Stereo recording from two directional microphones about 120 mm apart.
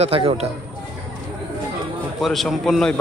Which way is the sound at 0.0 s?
50° right (ahead or behind).